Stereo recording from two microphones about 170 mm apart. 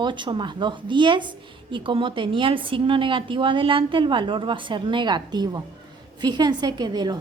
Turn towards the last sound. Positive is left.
turn(degrees=-25)  # may be behind; listen again after turning